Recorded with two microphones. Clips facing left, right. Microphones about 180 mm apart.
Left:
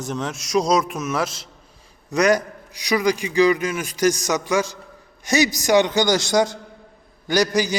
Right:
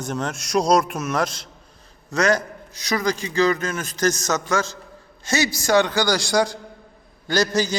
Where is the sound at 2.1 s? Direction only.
15° left (ahead or behind).